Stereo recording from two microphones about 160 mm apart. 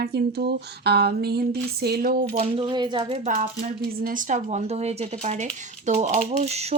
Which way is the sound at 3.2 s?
55° right (ahead or behind).